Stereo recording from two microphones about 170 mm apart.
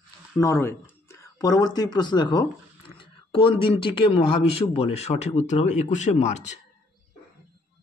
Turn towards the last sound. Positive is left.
turn(degrees=40)  # may be behind; listen again after turning